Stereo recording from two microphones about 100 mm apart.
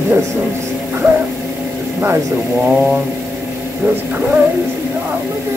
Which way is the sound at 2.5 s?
10° right (ahead or behind).